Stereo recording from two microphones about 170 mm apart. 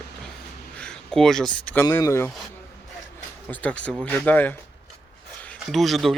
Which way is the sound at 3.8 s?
5° left (ahead or behind).